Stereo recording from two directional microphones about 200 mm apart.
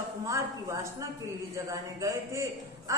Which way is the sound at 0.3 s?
15° right (ahead or behind).